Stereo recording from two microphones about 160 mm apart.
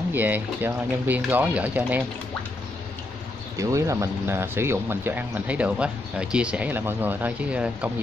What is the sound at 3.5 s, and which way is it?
Speech, 20° right (ahead or behind).